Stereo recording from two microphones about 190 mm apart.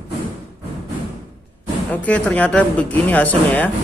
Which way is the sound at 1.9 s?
5° left (ahead or behind).